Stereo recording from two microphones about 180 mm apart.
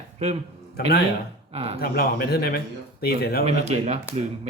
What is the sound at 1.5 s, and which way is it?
Speech, 35° right (ahead or behind).